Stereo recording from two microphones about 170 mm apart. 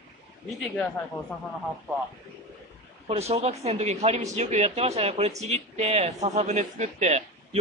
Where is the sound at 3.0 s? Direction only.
40° right (ahead or behind).